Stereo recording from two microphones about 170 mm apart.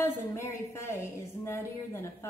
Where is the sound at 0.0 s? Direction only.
15° left (ahead or behind).